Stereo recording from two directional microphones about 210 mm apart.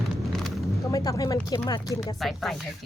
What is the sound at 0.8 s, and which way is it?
Speech, 15° left (ahead or behind).